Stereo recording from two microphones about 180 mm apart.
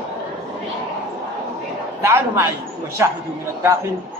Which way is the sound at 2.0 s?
15° right (ahead or behind).